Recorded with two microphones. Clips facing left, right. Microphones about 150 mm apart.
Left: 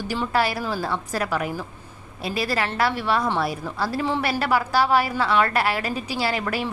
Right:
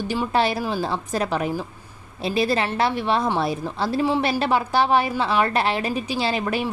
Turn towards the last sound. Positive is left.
turn(degrees=-20)  # may be behind; listen again after turning